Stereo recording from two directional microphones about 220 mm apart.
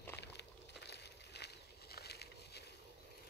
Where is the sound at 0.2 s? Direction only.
50° left (ahead or behind).